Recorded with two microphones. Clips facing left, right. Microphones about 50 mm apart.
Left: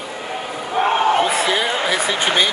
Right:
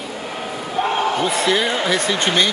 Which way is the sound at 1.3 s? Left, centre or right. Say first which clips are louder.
Even; centre.